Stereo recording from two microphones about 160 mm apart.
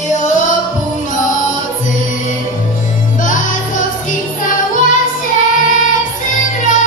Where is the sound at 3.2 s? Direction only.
55° left (ahead or behind).